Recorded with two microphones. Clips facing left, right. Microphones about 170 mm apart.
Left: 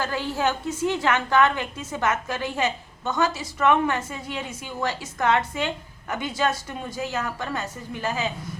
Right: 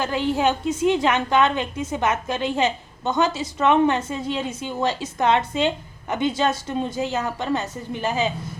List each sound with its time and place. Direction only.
0.0 s a woman's voice: 20° right (ahead or behind)